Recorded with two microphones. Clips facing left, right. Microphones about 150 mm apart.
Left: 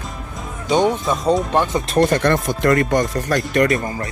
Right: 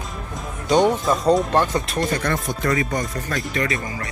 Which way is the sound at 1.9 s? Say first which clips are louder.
Left 7 dB; 55° left (ahead or behind).